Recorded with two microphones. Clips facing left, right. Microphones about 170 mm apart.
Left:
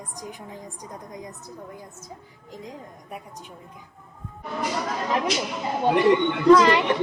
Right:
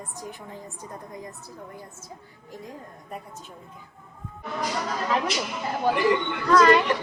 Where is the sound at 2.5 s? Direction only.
20° left (ahead or behind).